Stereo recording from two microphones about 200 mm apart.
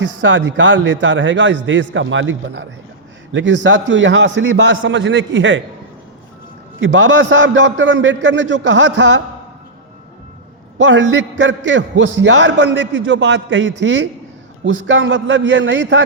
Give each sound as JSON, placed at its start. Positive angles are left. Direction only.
{"t": 0.0, "sound": "a man's voice", "side_deg": -65}
{"t": 6.7, "sound": "a man's voice", "side_deg": -70}
{"t": 10.8, "sound": "a man's voice", "side_deg": -65}